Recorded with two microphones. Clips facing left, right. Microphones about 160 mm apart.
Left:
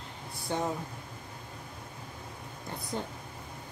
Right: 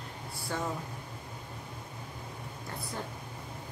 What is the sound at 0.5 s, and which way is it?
Speech, 20° left (ahead or behind).